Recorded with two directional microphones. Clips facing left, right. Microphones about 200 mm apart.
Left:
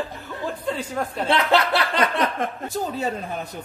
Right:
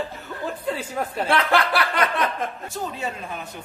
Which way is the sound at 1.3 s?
20° left (ahead or behind).